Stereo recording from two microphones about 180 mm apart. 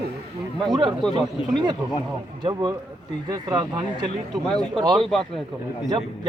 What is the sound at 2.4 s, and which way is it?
A man's voice, 25° right (ahead or behind).